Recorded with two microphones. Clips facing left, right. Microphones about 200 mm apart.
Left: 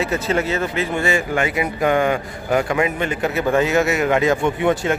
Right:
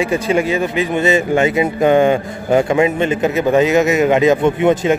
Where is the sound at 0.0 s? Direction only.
15° right (ahead or behind).